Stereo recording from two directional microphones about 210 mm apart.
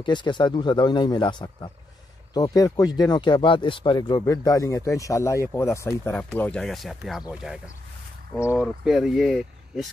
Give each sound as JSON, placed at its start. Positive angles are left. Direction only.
{"t": 0.0, "sound": "speech", "side_deg": 20}
{"t": 8.3, "sound": "speech", "side_deg": 15}
{"t": 8.5, "sound": "speech", "side_deg": 0}